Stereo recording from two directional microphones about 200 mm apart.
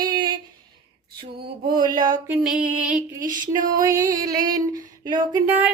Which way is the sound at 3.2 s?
40° right (ahead or behind).